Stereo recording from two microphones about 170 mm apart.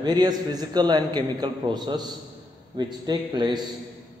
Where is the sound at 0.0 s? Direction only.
25° right (ahead or behind).